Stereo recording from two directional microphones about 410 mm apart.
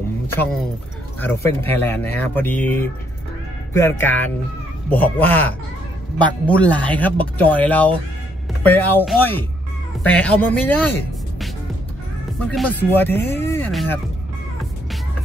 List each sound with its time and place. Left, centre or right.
1.2 s speech: centre